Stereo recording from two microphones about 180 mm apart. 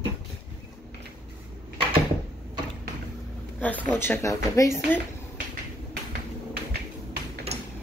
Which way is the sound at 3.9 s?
15° left (ahead or behind).